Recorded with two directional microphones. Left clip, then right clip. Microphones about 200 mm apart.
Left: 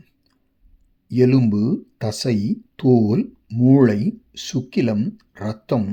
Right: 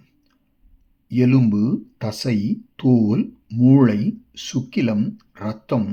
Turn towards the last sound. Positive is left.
turn(degrees=35)  # may be behind; listen again after turning